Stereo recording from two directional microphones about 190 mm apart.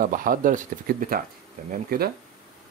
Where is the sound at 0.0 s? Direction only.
45° right (ahead or behind).